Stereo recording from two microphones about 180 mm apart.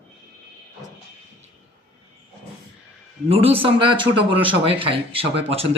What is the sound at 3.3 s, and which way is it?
Speech, 35° right (ahead or behind).